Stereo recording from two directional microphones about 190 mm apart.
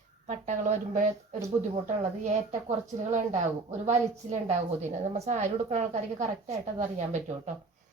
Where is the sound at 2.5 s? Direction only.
35° right (ahead or behind).